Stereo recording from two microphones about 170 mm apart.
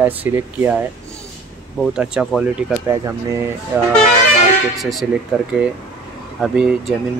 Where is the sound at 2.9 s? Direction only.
15° right (ahead or behind).